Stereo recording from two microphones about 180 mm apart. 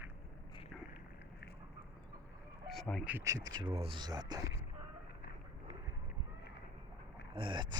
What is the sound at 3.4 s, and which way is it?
Speech, 25° right (ahead or behind).